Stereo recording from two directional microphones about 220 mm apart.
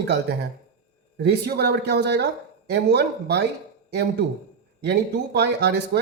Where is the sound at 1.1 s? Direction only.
45° right (ahead or behind).